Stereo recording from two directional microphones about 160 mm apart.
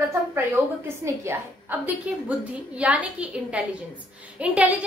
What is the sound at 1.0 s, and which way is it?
A woman's voice, 15° right (ahead or behind).